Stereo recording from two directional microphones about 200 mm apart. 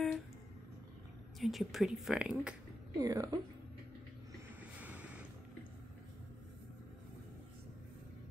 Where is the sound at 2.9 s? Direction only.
15° right (ahead or behind).